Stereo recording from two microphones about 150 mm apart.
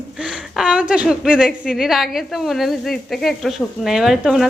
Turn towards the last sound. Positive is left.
turn(degrees=0)  # may be behind; listen again after turning